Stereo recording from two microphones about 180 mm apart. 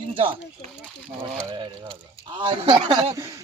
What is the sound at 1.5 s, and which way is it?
Speech, 25° right (ahead or behind).